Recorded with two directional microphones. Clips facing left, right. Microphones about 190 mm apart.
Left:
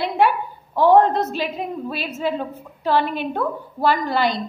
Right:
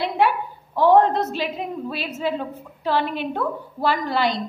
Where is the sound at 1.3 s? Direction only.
45° left (ahead or behind).